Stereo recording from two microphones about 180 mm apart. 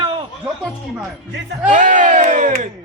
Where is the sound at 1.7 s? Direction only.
45° right (ahead or behind).